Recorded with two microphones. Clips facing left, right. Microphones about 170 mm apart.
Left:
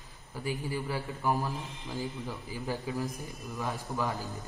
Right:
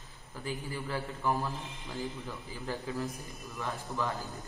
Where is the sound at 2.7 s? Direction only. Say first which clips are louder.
Left 1 dB; 10° left (ahead or behind).